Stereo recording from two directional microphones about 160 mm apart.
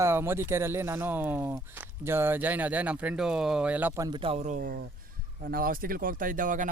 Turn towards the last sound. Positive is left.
turn(degrees=-55)  # may be behind; listen again after turning